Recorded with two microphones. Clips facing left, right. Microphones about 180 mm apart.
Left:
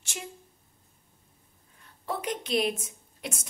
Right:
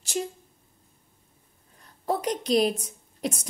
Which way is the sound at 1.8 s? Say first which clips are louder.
Right 6 dB; 40° right (ahead or behind).